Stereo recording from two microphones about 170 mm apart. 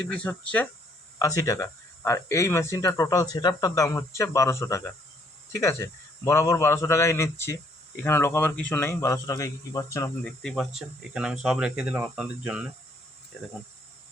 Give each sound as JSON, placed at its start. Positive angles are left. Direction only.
{"t": 0.1, "sound": "speech", "side_deg": 10}
{"t": 1.2, "sound": "speech", "side_deg": 20}
{"t": 10.2, "sound": "speech", "side_deg": 0}